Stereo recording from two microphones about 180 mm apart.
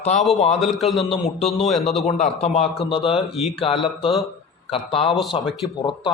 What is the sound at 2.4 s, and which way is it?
Speech, 35° left (ahead or behind).